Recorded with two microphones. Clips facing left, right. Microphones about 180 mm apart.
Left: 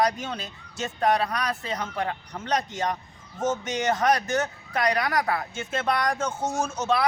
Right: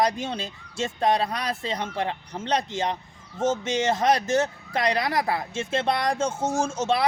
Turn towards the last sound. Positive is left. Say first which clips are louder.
# right 1 dB
turn(degrees=-30)  # may be behind; listen again after turning